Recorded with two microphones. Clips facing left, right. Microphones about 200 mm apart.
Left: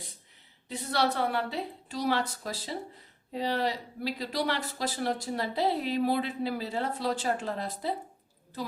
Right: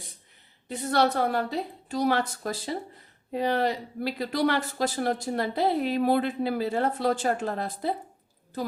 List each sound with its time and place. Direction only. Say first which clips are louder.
0.9 s speech: right 4 dB; 45° right (ahead or behind)